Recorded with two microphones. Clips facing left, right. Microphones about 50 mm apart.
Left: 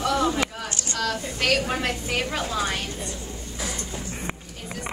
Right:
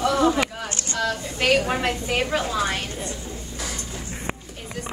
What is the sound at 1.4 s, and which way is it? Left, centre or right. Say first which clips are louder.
Speech: right 4 dB; centre.